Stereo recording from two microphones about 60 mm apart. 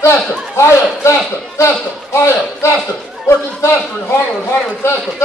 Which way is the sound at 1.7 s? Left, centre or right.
Left.